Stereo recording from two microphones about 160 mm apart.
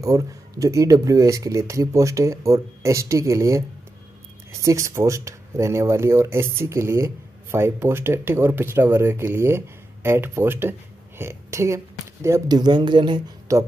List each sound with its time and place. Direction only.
0.0 s speech: 20° right (ahead or behind)
13.5 s speech: 20° right (ahead or behind)